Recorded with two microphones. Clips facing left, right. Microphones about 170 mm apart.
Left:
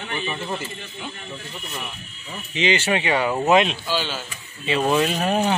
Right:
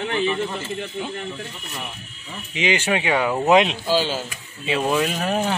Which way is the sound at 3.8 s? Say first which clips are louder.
Right 5 dB; 40° right (ahead or behind).